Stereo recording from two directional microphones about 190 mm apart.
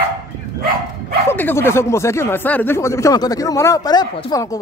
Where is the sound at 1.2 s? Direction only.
10° left (ahead or behind).